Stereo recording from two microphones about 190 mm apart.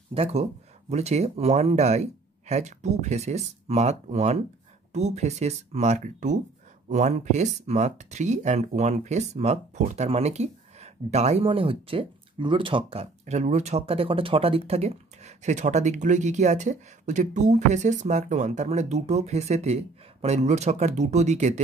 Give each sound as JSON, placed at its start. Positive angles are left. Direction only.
{"t": 0.1, "sound": "speech", "side_deg": -30}